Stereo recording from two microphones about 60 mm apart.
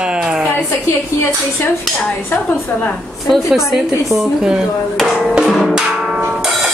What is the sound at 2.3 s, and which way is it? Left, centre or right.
Speech, left.